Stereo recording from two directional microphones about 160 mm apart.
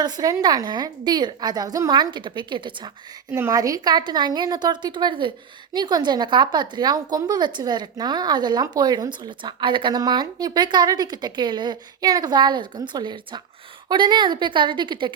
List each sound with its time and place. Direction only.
0.0 s a woman's voice: 25° right (ahead or behind)
3.3 s a woman's voice: 20° right (ahead or behind)